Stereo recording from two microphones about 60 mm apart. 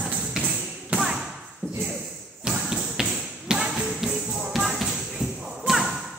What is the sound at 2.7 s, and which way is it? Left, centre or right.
Tap, centre.